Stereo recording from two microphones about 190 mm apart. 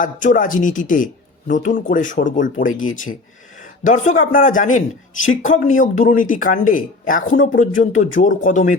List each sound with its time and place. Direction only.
0.0 s speech: 45° left (ahead or behind)
2.6 s speech: 90° left
3.6 s speech: 40° left (ahead or behind)